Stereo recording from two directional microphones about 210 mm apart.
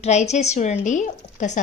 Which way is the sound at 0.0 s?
30° left (ahead or behind).